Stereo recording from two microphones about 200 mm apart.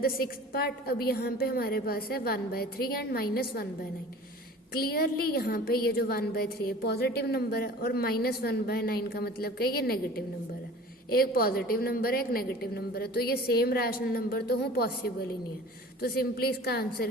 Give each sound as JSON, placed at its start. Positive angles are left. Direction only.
{"t": 0.0, "sound": "a woman's voice", "side_deg": 50}
{"t": 4.7, "sound": "a woman's voice", "side_deg": 50}
{"t": 11.1, "sound": "a woman's voice", "side_deg": 50}